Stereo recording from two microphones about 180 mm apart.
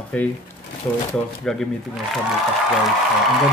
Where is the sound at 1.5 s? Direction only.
Centre (ahead or behind).